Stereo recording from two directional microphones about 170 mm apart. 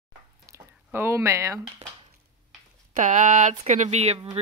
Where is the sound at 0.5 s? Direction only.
15° right (ahead or behind).